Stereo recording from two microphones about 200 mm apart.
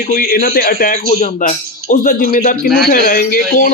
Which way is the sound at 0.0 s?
45° left (ahead or behind).